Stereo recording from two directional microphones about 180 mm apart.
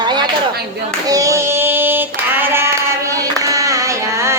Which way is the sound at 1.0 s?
20° right (ahead or behind).